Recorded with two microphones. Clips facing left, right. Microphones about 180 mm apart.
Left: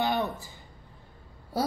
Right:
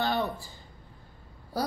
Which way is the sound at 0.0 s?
20° left (ahead or behind).